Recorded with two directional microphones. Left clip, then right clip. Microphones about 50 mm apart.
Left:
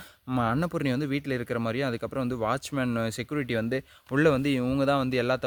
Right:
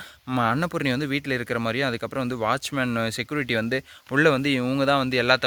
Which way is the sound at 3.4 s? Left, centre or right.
Left.